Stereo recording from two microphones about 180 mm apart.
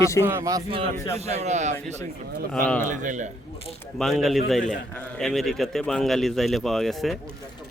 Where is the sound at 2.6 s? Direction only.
10° left (ahead or behind).